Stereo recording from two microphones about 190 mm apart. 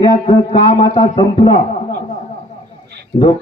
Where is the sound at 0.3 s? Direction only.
30° left (ahead or behind).